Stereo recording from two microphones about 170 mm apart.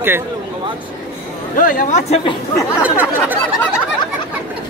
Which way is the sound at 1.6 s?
50° left (ahead or behind).